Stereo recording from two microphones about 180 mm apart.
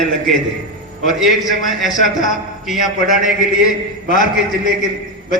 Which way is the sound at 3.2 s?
45° left (ahead or behind).